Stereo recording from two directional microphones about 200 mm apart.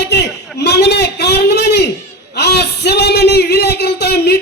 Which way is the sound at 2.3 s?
55° left (ahead or behind).